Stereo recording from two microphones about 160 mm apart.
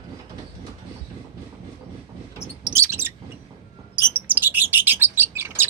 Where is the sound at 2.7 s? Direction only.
15° right (ahead or behind).